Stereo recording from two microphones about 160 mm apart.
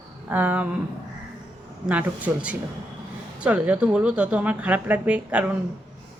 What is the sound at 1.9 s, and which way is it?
Speech, 10° right (ahead or behind).